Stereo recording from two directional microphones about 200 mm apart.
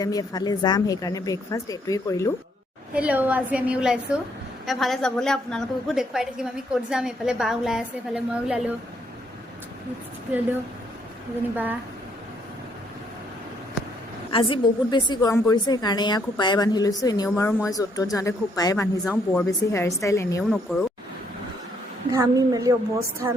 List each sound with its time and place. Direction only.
0.0 s speech: 20° left (ahead or behind)
2.9 s a woman's voice: 5° right (ahead or behind)
11.5 s a woman's voice: 10° right (ahead or behind)
14.3 s a woman's voice: 25° left (ahead or behind)
19.0 s a woman's voice: centre (ahead or behind)
19.5 s speech: 15° left (ahead or behind)
20.4 s a woman's voice: centre (ahead or behind)
22.1 s a woman's voice: 15° right (ahead or behind)